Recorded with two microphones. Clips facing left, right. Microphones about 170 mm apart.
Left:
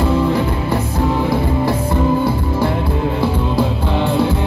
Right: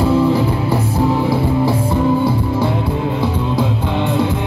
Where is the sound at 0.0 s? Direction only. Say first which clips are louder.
Right 2 dB; 5° right (ahead or behind).